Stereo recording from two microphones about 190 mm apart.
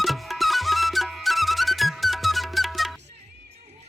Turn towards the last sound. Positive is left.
turn(degrees=0)  # may be behind; listen again after turning